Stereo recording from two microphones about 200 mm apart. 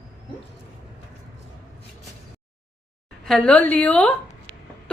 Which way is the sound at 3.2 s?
5° left (ahead or behind).